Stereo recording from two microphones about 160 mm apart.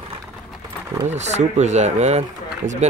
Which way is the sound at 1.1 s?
45° right (ahead or behind).